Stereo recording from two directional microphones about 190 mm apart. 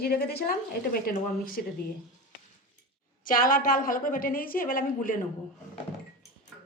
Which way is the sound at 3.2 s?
45° left (ahead or behind).